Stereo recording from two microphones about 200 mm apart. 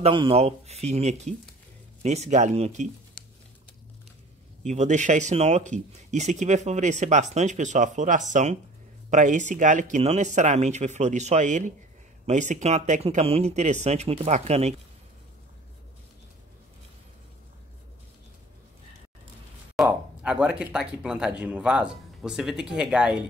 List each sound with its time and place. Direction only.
0.0 s speech: 25° right (ahead or behind)
4.6 s speech: 35° right (ahead or behind)
19.7 s a sound: 5° right (ahead or behind)
20.7 s speech: 5° right (ahead or behind)